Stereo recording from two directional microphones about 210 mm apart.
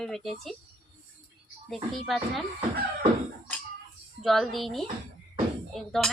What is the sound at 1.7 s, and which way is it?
Speech, centre (ahead or behind).